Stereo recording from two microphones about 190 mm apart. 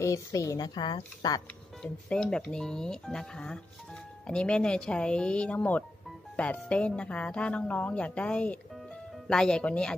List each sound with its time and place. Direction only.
0.0 s speech: 15° left (ahead or behind)
1.8 s speech: 5° left (ahead or behind)